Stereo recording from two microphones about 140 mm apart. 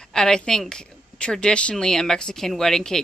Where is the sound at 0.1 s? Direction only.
5° left (ahead or behind).